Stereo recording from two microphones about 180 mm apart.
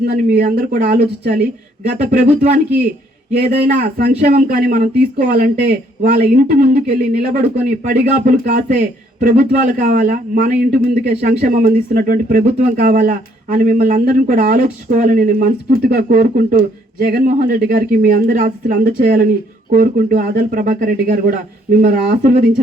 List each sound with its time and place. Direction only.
0.0 s speech: 60° right (ahead or behind)
3.3 s speech: 55° right (ahead or behind)